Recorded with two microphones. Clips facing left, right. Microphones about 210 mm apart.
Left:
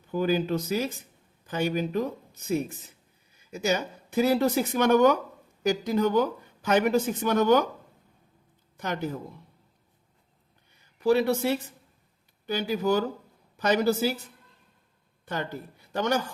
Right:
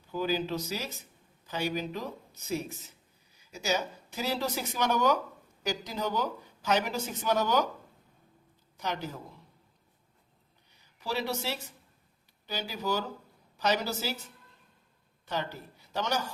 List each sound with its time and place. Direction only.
0.1 s speech: 55° left (ahead or behind)
8.8 s speech: 55° left (ahead or behind)
11.0 s speech: 55° left (ahead or behind)
15.3 s speech: 55° left (ahead or behind)